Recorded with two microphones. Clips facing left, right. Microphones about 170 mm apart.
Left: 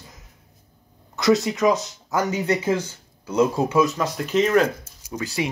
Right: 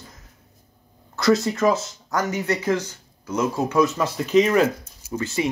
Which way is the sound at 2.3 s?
10° left (ahead or behind).